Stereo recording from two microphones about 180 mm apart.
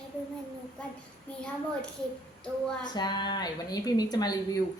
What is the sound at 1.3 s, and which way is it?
Speech, 10° left (ahead or behind).